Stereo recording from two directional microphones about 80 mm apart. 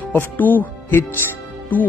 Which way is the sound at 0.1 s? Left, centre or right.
Left.